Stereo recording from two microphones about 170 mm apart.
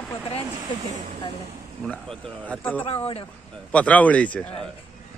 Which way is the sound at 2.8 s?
35° left (ahead or behind).